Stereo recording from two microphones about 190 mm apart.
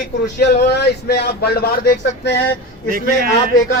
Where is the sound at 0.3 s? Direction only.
60° left (ahead or behind).